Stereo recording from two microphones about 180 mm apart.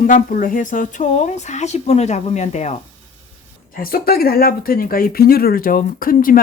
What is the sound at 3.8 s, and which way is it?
Speech, 55° left (ahead or behind).